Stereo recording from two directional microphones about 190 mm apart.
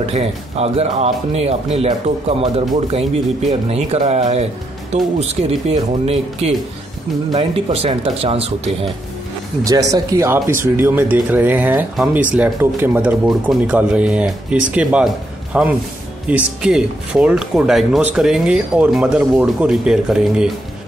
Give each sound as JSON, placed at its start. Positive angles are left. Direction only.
{"t": 0.0, "sound": "speech", "side_deg": -35}
{"t": 3.6, "sound": "speech", "side_deg": -35}
{"t": 5.5, "sound": "speech", "side_deg": -30}
{"t": 9.7, "sound": "speech", "side_deg": -20}